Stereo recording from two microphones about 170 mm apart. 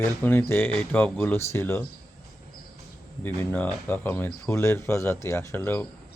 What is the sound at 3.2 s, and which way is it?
Speech, 10° left (ahead or behind).